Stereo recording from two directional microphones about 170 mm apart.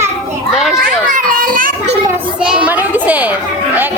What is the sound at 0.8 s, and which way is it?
Children playing, 55° right (ahead or behind).